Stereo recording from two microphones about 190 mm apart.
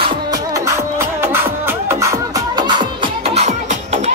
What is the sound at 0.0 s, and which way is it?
Music, 20° right (ahead or behind).